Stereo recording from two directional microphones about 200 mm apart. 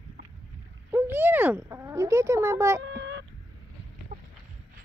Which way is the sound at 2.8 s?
60° right (ahead or behind).